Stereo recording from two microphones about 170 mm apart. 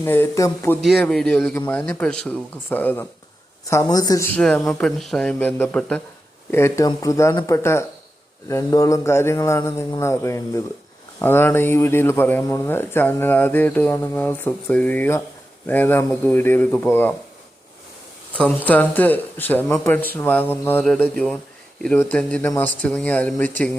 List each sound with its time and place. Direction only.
0.0 s speech: 15° left (ahead or behind)
0.8 s speech: centre (ahead or behind); by 4.3 s 20° left (ahead or behind)
4.4 s speech: 5° left (ahead or behind)
18.3 s speech: 10° left (ahead or behind)